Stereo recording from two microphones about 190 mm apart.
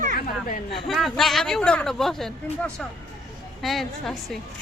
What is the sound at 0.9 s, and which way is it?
Speech, centre (ahead or behind).